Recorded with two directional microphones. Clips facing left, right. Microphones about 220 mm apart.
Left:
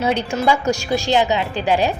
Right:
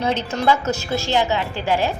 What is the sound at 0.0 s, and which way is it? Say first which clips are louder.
Speech: left 2 dB; 10° left (ahead or behind).